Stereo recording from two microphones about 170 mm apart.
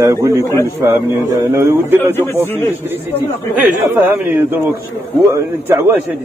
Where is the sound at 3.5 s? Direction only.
10° right (ahead or behind).